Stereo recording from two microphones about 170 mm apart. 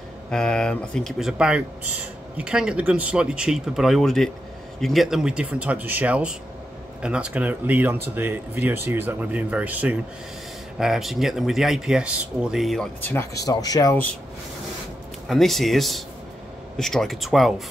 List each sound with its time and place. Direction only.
0.3 s speech: 5° left (ahead or behind)
15.2 s speech: centre (ahead or behind)